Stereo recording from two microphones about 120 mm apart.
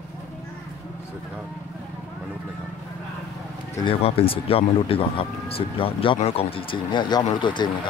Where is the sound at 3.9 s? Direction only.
50° left (ahead or behind).